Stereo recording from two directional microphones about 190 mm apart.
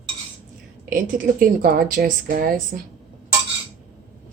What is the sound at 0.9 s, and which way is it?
A woman's voice, 45° right (ahead or behind).